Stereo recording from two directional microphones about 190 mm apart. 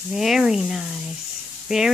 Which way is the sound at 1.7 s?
5° right (ahead or behind).